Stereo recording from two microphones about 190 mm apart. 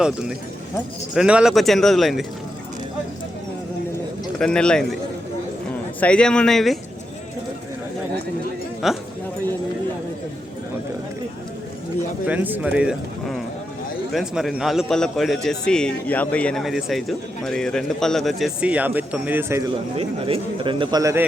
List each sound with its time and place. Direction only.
0.0 s a man's voice: 5° right (ahead or behind)
4.4 s a man's voice: 5° left (ahead or behind)
6.0 s a man's voice: 5° left (ahead or behind)
8.8 s a man's voice: centre (ahead or behind)
12.2 s a man's voice: 10° right (ahead or behind)
20.0 s speech: 30° right (ahead or behind)